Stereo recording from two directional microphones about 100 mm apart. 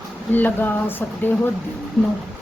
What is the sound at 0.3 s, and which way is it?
Speech, 20° left (ahead or behind).